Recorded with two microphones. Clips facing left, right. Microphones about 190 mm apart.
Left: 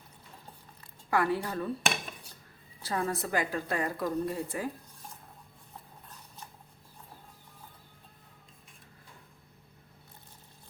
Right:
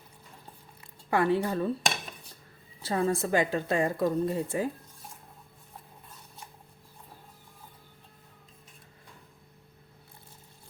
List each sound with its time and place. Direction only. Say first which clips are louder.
1.1 s a woman's voice: right 4 dB; 25° right (ahead or behind)